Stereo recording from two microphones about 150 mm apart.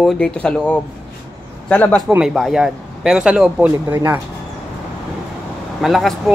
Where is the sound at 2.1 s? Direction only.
5° right (ahead or behind).